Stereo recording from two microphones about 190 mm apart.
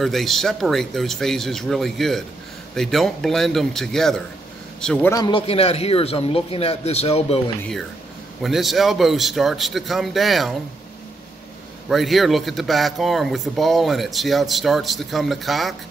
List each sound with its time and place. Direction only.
0.0 s speech: centre (ahead or behind)
5.1 s a man's voice: 25° left (ahead or behind)
8.4 s speech: centre (ahead or behind)
11.9 s speech: centre (ahead or behind)